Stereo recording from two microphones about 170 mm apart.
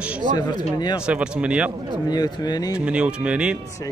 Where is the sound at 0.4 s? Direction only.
25° left (ahead or behind).